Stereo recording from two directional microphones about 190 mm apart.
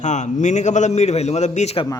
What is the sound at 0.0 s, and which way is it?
A man's voice, 40° left (ahead or behind).